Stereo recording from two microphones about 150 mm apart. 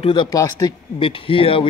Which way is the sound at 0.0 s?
30° left (ahead or behind).